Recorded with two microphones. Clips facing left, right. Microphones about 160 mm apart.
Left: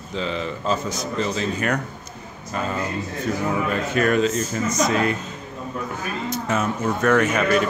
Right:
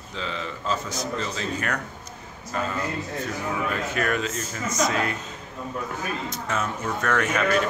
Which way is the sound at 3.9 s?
25° left (ahead or behind).